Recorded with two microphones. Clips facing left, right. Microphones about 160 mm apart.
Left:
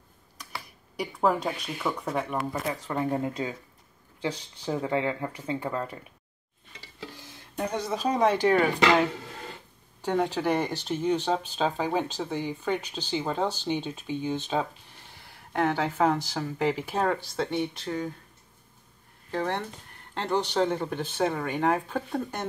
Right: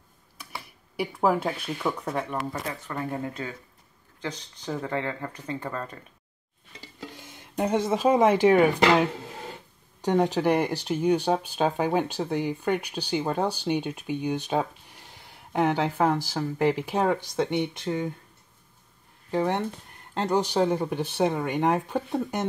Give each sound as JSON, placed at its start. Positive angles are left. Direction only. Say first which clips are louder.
{"t": 0.9, "sound": "speech", "louder": "right 1 dB", "side_deg": -5}
{"t": 2.7, "sound": "speech", "louder": "left 4 dB", "side_deg": 20}
{"t": 7.2, "sound": "speech", "louder": "right 5 dB", "side_deg": -20}
{"t": 10.0, "sound": "speech", "louder": "right 3 dB", "side_deg": -15}
{"t": 19.3, "sound": "speech", "louder": "right 4 dB", "side_deg": -15}